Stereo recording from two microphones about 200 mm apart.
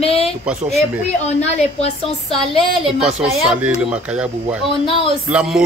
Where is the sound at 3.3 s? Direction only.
5° right (ahead or behind).